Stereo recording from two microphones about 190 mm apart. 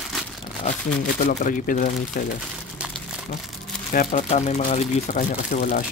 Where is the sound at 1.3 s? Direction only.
45° left (ahead or behind).